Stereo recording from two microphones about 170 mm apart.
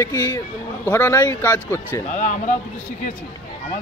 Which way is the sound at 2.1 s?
50° left (ahead or behind).